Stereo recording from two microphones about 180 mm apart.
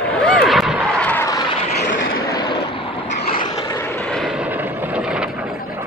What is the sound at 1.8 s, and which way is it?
Vehicle, 90° left.